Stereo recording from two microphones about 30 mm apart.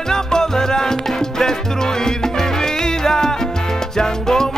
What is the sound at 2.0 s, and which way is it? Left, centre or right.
Music, centre.